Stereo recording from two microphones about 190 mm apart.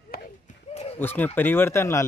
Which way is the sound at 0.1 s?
50° left (ahead or behind).